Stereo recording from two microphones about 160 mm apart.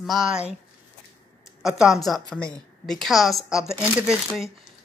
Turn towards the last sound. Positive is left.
turn(degrees=-5)  # may be behind; listen again after turning